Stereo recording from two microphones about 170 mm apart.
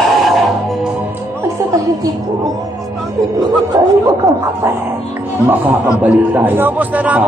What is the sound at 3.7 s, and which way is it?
Speech, 20° right (ahead or behind).